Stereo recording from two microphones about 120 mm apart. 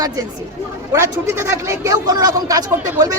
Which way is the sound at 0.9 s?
20° right (ahead or behind).